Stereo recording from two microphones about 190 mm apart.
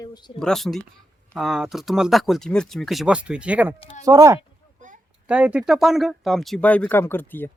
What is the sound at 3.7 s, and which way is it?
Speech, 30° left (ahead or behind).